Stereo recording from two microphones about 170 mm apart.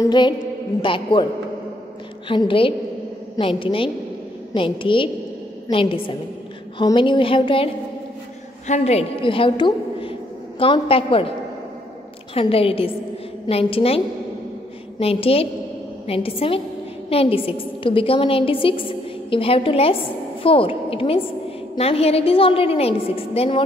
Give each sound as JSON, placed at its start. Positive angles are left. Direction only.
{"t": 0.0, "sound": "a woman's voice", "side_deg": 25}
{"t": 2.2, "sound": "a woman's voice", "side_deg": 30}
{"t": 8.6, "sound": "a woman's voice", "side_deg": 40}
{"t": 12.4, "sound": "a woman's voice", "side_deg": 35}